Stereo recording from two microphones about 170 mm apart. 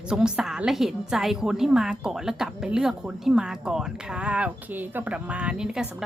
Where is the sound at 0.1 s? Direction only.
5° right (ahead or behind).